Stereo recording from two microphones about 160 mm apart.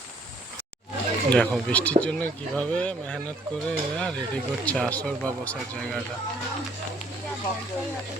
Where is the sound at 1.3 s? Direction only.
5° left (ahead or behind).